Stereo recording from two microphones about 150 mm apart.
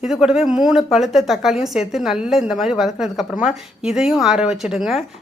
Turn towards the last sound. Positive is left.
turn(degrees=-5)  # may be behind; listen again after turning